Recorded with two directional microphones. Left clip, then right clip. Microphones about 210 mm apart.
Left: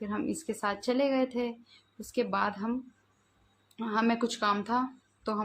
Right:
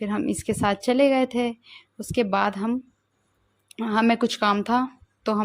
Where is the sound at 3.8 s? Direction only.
35° right (ahead or behind).